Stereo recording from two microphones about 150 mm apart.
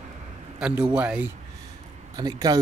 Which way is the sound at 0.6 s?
5° right (ahead or behind).